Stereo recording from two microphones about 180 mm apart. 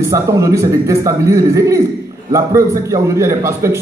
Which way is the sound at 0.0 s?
15° right (ahead or behind).